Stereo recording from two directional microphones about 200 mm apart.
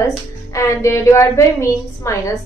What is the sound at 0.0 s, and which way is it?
A woman's voice, 15° left (ahead or behind).